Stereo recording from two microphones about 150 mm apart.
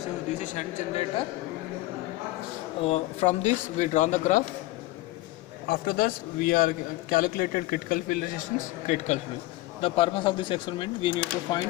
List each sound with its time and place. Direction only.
0.4 s a man's voice: 55° left (ahead or behind)
2.8 s a man's voice: 45° left (ahead or behind)
5.7 s a man's voice: 70° left (ahead or behind)
8.8 s a man's voice: 50° left (ahead or behind)
9.8 s speech: 40° left (ahead or behind)